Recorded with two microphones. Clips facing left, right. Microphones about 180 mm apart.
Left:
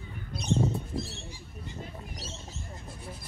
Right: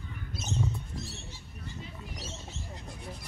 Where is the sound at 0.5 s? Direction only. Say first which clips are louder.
Left 2 dB; 35° left (ahead or behind).